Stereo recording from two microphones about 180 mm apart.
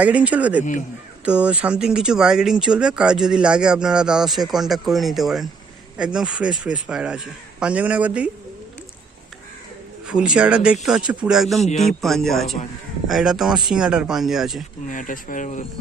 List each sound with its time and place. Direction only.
0.0 s a man's voice: 10° right (ahead or behind)
10.1 s speech: 5° right (ahead or behind)
11.6 s a man's voice: 40° left (ahead or behind)
11.9 s speech: centre (ahead or behind)
14.8 s speech: 45° left (ahead or behind)